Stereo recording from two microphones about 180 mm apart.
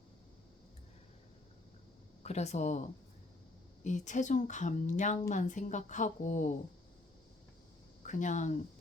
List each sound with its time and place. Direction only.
2.2 s speech: 40° left (ahead or behind)
3.8 s speech: 45° left (ahead or behind)
8.0 s speech: 45° left (ahead or behind)